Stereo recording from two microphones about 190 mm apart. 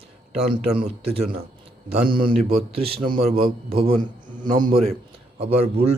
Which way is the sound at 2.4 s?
35° right (ahead or behind).